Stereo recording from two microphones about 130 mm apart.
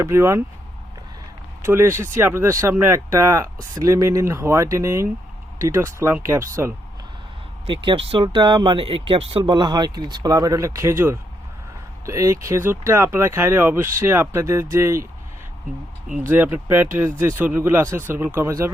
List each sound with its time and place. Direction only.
0.0 s speech: 20° right (ahead or behind)
1.6 s speech: 20° right (ahead or behind)
7.7 s speech: 40° right (ahead or behind); by 15.0 s 20° right (ahead or behind)
16.3 s speech: 15° right (ahead or behind)